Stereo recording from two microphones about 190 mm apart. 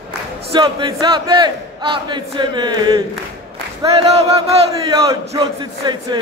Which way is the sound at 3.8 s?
20° right (ahead or behind).